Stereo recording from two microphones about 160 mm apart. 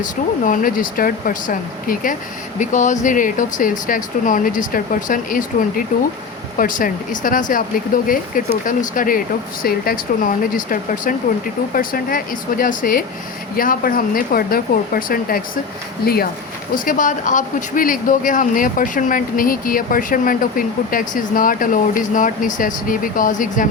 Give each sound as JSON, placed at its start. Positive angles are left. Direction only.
{"t": 0.0, "sound": "speech", "side_deg": 55}
{"t": 16.7, "sound": "speech", "side_deg": 55}